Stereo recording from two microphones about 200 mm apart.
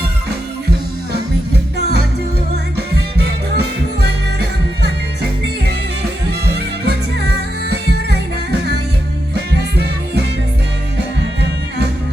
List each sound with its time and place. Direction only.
4.0 s music: 55° right (ahead or behind)
6.4 s music: 55° right (ahead or behind)
9.3 s music: 55° right (ahead or behind)